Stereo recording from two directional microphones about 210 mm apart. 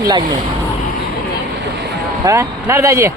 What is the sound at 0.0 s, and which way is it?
Speech, 20° right (ahead or behind).